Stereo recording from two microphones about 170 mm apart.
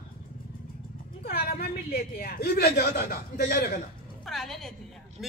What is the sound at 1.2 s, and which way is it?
A man's voice, 65° left (ahead or behind).